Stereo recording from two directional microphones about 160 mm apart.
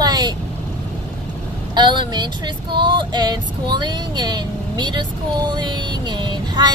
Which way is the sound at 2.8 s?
30° right (ahead or behind).